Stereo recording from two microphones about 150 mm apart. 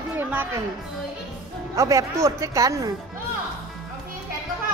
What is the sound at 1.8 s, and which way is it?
Speech, 20° right (ahead or behind).